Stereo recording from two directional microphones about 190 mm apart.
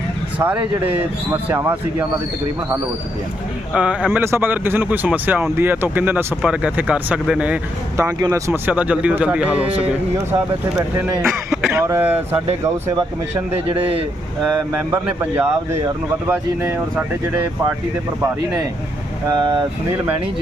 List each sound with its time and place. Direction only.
0.3 s speech: 10° right (ahead or behind)
3.8 s speech: 5° right (ahead or behind)
13.7 s speech: 30° right (ahead or behind)
15.0 s speech: 10° right (ahead or behind)
19.3 s speech: 25° right (ahead or behind)